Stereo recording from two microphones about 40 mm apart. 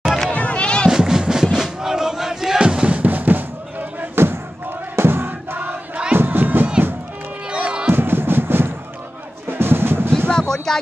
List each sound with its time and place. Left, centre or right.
0.0 s run: centre
0.3 s run: left
0.8 s music: centre
3.0 s music: right
4.1 s crowd: right
4.9 s a sound: right
6.1 s music: right
7.8 s music: right
10.2 s a sound: left
10.5 s a sound: centre